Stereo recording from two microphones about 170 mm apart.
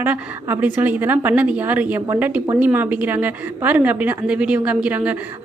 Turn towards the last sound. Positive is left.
turn(degrees=-10)  # may be behind; listen again after turning